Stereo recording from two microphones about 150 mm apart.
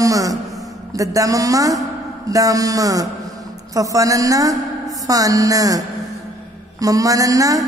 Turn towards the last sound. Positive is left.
turn(degrees=-25)  # may be behind; listen again after turning